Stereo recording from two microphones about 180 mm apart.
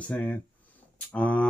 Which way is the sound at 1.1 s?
5° left (ahead or behind).